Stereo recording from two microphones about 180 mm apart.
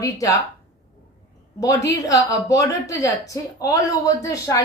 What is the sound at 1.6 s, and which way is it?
A woman's voice, 20° left (ahead or behind).